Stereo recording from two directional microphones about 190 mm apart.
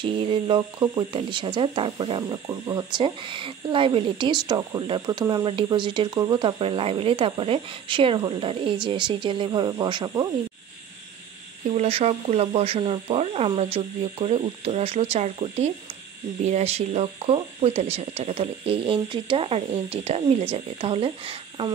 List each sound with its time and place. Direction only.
0.0 s speech: 25° right (ahead or behind)
11.7 s speech: 35° right (ahead or behind)